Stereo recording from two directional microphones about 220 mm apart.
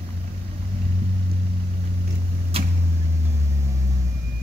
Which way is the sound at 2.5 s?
25° right (ahead or behind).